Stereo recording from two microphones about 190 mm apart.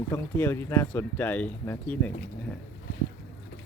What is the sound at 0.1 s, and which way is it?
Speech, 10° left (ahead or behind).